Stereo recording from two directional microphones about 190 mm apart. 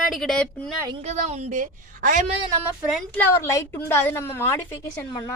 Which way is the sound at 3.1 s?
15° left (ahead or behind).